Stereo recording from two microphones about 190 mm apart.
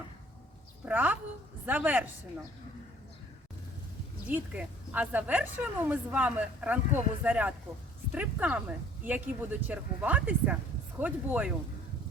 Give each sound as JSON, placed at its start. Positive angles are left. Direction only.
{"t": 0.9, "sound": "a woman's voice", "side_deg": -10}
{"t": 4.3, "sound": "a woman's voice", "side_deg": -10}